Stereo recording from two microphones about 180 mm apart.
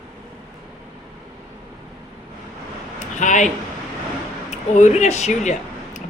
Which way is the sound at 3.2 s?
45° left (ahead or behind).